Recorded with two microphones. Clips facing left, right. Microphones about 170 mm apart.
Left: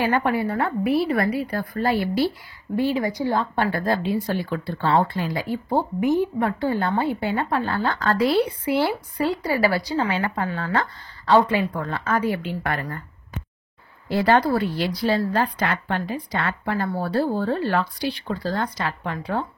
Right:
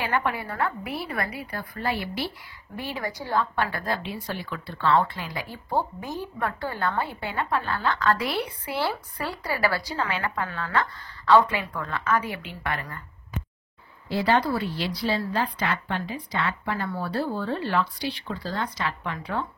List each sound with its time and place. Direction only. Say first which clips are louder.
0.0 s speech: left 6 dB; 30° left (ahead or behind)
1.5 s speech: left 7 dB; 45° left (ahead or behind)
2.7 s speech: left 10 dB; 25° left (ahead or behind)
14.0 s a woman's voice: left 4 dB; 50° left (ahead or behind)